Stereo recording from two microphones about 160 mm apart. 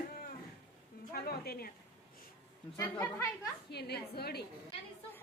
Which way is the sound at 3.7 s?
85° left.